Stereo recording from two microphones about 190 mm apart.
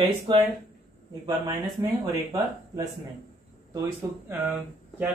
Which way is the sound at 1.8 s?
20° right (ahead or behind).